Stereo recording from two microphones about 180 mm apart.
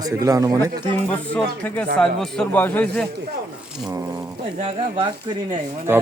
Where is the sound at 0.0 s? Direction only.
20° right (ahead or behind).